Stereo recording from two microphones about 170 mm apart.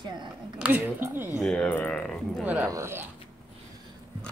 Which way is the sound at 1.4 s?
5° left (ahead or behind).